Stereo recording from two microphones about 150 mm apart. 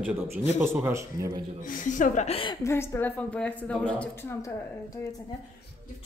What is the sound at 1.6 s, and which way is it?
Speech, 60° left (ahead or behind).